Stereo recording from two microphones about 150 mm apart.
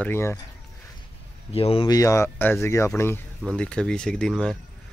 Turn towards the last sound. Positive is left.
turn(degrees=5)  # may be behind; listen again after turning